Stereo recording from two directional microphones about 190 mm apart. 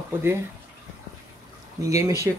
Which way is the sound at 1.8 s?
15° right (ahead or behind).